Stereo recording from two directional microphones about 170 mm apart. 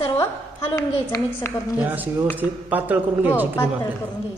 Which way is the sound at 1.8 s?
10° right (ahead or behind).